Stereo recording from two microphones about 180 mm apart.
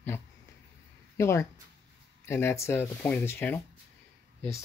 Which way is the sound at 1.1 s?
15° left (ahead or behind).